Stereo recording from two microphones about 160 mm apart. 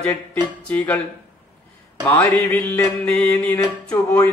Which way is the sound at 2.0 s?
15° left (ahead or behind).